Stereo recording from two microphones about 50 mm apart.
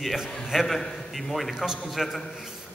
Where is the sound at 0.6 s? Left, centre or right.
Centre.